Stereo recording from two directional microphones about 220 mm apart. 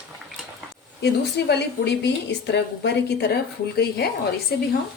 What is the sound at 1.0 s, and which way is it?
A woman's voice, 50° left (ahead or behind).